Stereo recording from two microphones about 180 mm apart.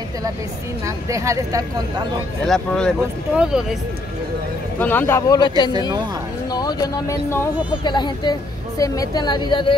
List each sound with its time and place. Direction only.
0.8 s speech: 15° right (ahead or behind)
2.4 s speech: 5° left (ahead or behind)
4.7 s a man's voice: 10° left (ahead or behind)
6.5 s a woman's voice: 20° left (ahead or behind)